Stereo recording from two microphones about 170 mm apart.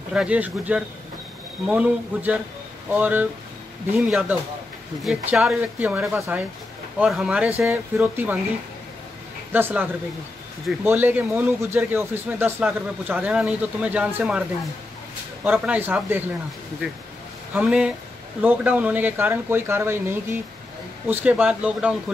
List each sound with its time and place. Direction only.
0.1 s speech: 5° right (ahead or behind)
5.8 s speech: 10° right (ahead or behind)
9.5 s speech: 10° right (ahead or behind)
15.4 s speech: 10° right (ahead or behind)
17.6 s speech: 5° right (ahead or behind)